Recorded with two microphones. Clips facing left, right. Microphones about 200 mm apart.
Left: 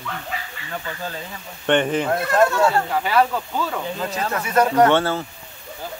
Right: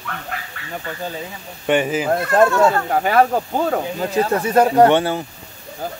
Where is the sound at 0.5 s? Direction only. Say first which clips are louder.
Right 2 dB; 60° right (ahead or behind).